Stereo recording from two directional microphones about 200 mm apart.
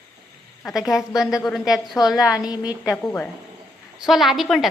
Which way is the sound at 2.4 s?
20° left (ahead or behind).